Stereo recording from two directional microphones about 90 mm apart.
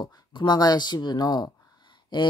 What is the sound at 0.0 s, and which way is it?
Speech, 55° left (ahead or behind).